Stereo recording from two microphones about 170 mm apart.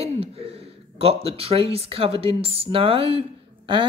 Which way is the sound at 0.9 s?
35° right (ahead or behind).